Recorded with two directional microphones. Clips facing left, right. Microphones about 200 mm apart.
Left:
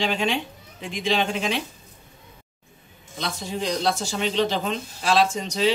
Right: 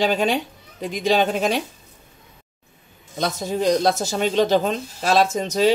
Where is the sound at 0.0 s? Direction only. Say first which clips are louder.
Right 5 dB; 40° right (ahead or behind).